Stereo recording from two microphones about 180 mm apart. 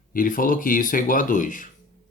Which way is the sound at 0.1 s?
50° left (ahead or behind).